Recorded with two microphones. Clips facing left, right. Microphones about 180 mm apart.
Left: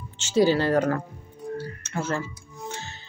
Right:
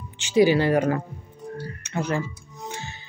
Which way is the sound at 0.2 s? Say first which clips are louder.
Right 2 dB; 15° right (ahead or behind).